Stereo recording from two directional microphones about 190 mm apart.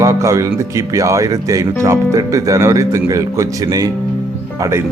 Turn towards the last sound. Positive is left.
turn(degrees=-15)  # may be behind; listen again after turning